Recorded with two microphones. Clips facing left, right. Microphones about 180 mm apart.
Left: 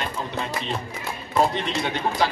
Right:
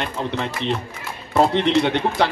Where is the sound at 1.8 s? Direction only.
65° right (ahead or behind).